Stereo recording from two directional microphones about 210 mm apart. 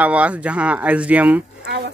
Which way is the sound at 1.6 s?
50° right (ahead or behind).